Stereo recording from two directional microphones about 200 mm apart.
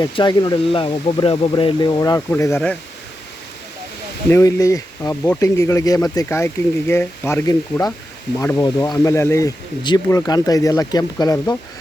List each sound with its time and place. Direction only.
0.0 s speech: 20° left (ahead or behind)
4.3 s speech: 15° left (ahead or behind)